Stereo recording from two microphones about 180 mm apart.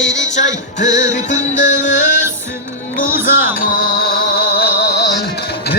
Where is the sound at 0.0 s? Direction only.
90° left.